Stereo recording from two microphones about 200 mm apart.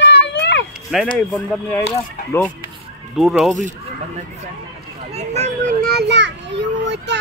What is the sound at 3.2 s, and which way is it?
Speech, centre (ahead or behind).